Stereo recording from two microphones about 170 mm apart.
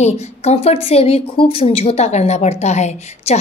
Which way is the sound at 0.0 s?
40° left (ahead or behind).